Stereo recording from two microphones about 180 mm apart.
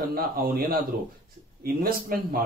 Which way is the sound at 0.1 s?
55° right (ahead or behind).